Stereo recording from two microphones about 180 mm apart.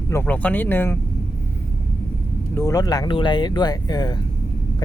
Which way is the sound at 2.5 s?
20° left (ahead or behind).